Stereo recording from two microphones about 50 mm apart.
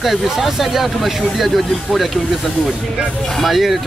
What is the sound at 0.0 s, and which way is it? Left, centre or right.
Speech, centre.